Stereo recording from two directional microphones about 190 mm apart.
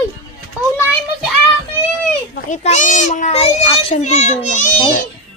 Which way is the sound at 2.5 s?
40° left (ahead or behind).